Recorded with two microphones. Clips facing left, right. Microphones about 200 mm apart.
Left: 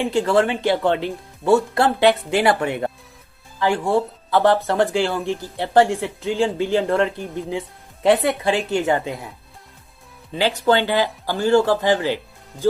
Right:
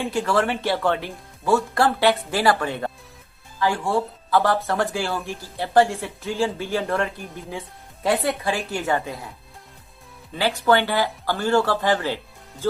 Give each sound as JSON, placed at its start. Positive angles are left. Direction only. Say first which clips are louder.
{"t": 0.0, "sound": "speech", "louder": "left 4 dB", "side_deg": 20}
{"t": 10.3, "sound": "speech", "louder": "left 2 dB", "side_deg": 20}